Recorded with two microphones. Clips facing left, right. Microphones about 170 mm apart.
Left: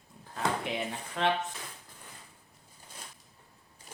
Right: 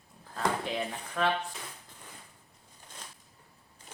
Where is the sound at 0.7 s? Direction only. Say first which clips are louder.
Right 1 dB; 20° left (ahead or behind).